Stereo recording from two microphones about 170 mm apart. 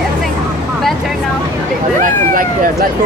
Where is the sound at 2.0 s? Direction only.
55° right (ahead or behind).